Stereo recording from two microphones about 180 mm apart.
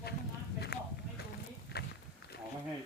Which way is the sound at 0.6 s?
60° left (ahead or behind).